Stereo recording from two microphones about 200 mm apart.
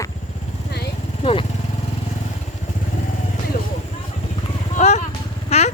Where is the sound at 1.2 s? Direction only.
30° left (ahead or behind).